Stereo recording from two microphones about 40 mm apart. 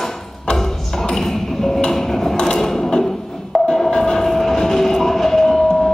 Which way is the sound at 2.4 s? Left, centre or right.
Centre.